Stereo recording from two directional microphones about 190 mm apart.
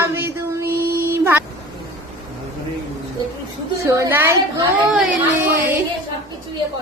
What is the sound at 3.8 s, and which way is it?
Speech, 15° right (ahead or behind).